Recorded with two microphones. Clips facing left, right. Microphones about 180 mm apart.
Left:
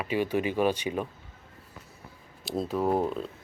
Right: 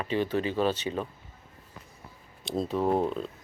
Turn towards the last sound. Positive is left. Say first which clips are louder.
# even
turn(degrees=5)  # may be behind; listen again after turning